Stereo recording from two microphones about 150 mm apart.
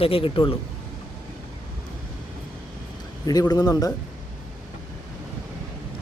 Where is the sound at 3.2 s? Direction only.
25° left (ahead or behind).